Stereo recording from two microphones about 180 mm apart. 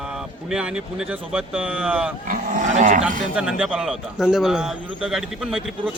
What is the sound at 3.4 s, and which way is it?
A man's voice, 5° right (ahead or behind).